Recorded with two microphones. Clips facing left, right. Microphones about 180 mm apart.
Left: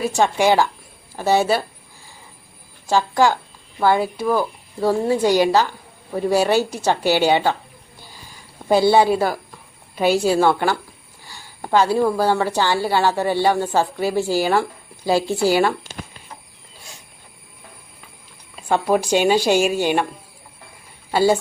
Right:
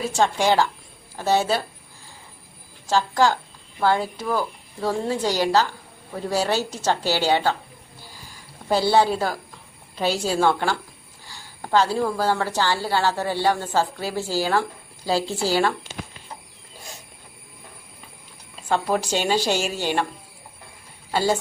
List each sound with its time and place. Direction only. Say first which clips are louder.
0.2 s a woman's voice: left 3 dB; 10° left (ahead or behind)
2.8 s a woman's voice: left 3 dB; 15° left (ahead or behind)
8.9 s a woman's voice: left 4 dB; 10° left (ahead or behind)
18.7 s a woman's voice: left 5 dB; 15° left (ahead or behind)
21.1 s a woman's voice: left 5 dB; 10° left (ahead or behind)